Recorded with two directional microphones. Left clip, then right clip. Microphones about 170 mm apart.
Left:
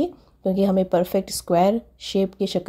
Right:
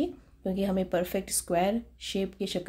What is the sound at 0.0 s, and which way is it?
Speech, 40° left (ahead or behind).